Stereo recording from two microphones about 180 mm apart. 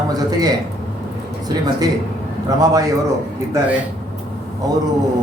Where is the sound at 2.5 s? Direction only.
20° right (ahead or behind).